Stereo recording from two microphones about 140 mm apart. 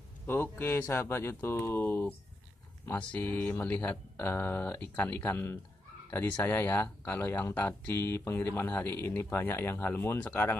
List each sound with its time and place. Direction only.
0.3 s speech: 15° left (ahead or behind)